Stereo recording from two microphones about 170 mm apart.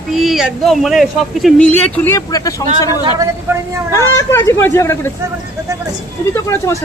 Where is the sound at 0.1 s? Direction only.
Centre (ahead or behind).